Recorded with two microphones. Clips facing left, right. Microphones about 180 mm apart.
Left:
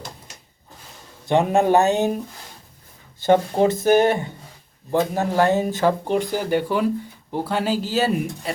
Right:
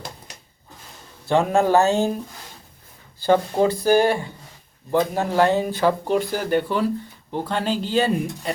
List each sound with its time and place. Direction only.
1.3 s speech: 20° left (ahead or behind)
3.2 s speech: 20° left (ahead or behind); by 8.5 s 5° left (ahead or behind)